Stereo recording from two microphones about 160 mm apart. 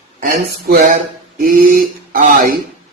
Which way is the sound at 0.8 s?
55° right (ahead or behind).